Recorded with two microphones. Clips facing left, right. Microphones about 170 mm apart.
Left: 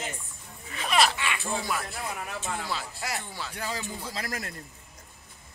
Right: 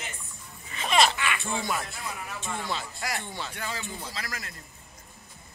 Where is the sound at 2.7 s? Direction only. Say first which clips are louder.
Right 1 dB; 5° left (ahead or behind).